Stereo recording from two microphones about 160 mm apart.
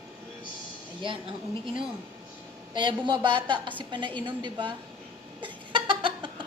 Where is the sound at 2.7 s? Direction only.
30° right (ahead or behind).